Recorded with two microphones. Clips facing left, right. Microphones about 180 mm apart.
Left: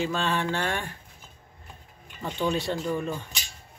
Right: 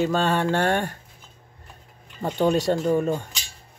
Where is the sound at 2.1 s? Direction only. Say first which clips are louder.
Right 6 dB; 40° right (ahead or behind).